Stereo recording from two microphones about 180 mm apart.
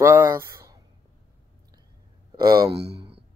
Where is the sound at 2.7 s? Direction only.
70° right (ahead or behind).